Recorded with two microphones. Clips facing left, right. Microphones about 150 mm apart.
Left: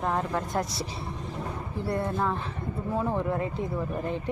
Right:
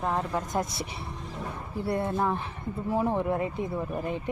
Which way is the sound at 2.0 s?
20° right (ahead or behind).